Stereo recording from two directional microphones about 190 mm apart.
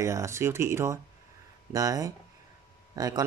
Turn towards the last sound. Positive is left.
turn(degrees=-20)  # may be behind; listen again after turning